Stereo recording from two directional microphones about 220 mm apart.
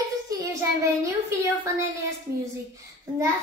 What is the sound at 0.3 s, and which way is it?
Child singing, 15° right (ahead or behind).